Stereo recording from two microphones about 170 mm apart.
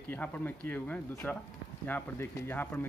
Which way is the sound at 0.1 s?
10° left (ahead or behind).